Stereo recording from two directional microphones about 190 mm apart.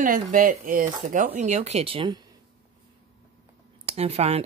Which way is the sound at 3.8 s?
30° right (ahead or behind).